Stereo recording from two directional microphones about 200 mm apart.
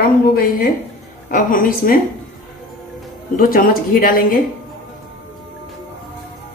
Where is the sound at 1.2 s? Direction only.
45° left (ahead or behind).